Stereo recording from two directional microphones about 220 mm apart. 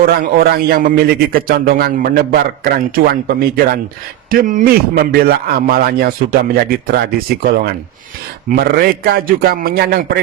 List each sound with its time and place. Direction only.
0.0 s a man's voice: 45° right (ahead or behind)